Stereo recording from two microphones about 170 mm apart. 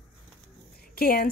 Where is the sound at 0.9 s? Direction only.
60° left (ahead or behind).